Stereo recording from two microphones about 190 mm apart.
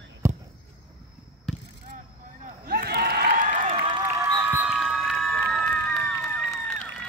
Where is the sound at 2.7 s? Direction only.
55° right (ahead or behind).